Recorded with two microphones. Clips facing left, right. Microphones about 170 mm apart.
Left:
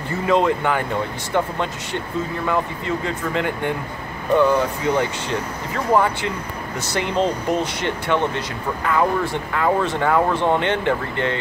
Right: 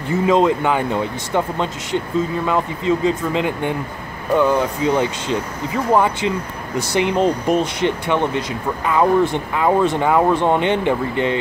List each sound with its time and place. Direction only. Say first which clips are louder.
0.3 s speech: right 2 dB; 20° right (ahead or behind)